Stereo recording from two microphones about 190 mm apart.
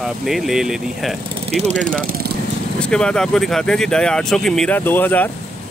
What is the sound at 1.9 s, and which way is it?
Speech, 50° right (ahead or behind).